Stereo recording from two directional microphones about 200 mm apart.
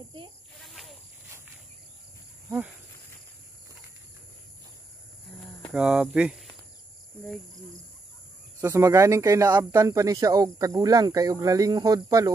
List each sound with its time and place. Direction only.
5.7 s speech: 5° right (ahead or behind)
8.5 s speech: 15° right (ahead or behind)